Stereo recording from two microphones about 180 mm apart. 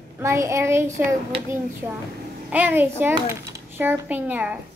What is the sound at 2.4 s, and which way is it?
A woman's voice, 10° right (ahead or behind).